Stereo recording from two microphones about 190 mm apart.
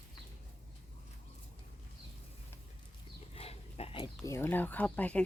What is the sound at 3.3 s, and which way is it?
Dog, 30° left (ahead or behind).